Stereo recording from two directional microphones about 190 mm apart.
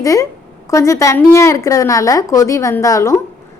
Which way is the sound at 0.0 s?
15° left (ahead or behind).